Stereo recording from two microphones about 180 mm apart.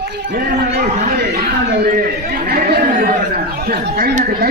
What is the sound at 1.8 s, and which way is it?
Chatter, 55° right (ahead or behind).